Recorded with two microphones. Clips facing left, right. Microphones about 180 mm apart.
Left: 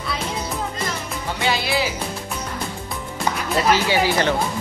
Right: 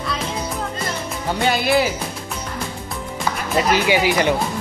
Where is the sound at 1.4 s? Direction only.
50° right (ahead or behind).